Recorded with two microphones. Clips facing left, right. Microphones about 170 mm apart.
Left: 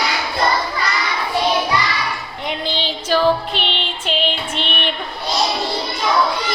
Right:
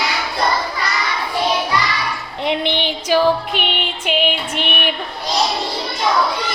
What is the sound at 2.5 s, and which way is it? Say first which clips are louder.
Music: right 4 dB; 20° right (ahead or behind).